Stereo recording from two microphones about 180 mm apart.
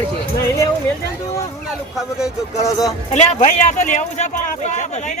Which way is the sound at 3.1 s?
40° left (ahead or behind).